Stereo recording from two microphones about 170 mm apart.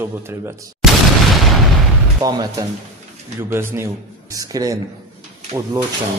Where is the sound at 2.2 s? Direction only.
20° right (ahead or behind).